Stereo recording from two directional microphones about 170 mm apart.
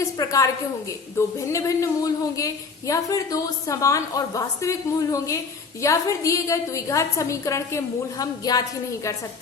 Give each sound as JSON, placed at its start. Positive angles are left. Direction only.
{"t": 0.0, "sound": "a woman's voice", "side_deg": 20}